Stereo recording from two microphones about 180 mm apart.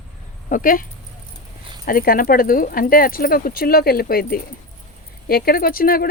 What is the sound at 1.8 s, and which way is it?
Speech, 50° left (ahead or behind).